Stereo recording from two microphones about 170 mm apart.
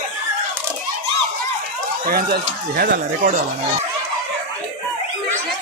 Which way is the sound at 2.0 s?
65° right (ahead or behind).